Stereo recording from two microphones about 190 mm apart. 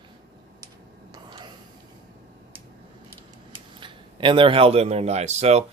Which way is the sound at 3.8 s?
25° right (ahead or behind).